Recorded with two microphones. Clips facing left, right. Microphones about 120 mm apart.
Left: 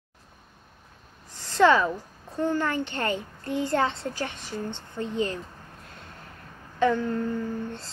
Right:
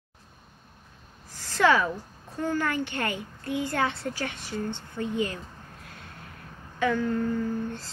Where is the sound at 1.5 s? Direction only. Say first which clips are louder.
Left 3 dB; 25° left (ahead or behind).